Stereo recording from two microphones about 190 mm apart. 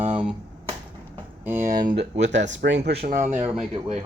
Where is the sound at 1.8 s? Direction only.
50° right (ahead or behind).